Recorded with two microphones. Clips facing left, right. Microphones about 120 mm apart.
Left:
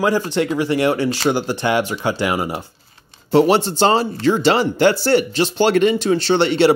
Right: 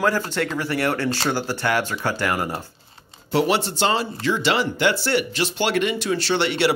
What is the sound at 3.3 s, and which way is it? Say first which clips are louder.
Speech: left 7 dB; 35° left (ahead or behind).